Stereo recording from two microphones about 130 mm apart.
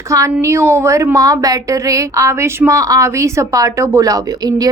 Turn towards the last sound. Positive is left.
turn(degrees=-30)  # may be behind; listen again after turning